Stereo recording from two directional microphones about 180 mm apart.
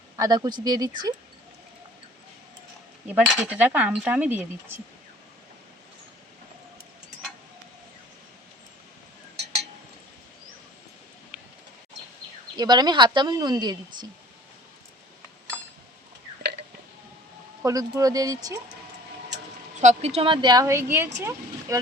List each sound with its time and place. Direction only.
0.2 s a woman's voice: 20° right (ahead or behind)
3.1 s speech: 5° right (ahead or behind)
12.5 s a woman's voice: 25° right (ahead or behind)
17.6 s a woman's voice: 20° right (ahead or behind)
19.8 s a woman's voice: 40° right (ahead or behind); by 21.8 s 15° right (ahead or behind)